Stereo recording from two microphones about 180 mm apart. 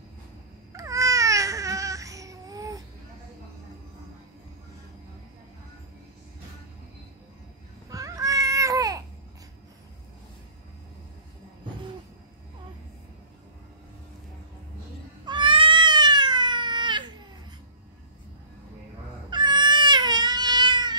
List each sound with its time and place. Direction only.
0.7 s babbling: 20° right (ahead or behind)
7.9 s babbling: 20° right (ahead or behind)
15.2 s cat: 25° right (ahead or behind)
19.3 s cat: 25° right (ahead or behind)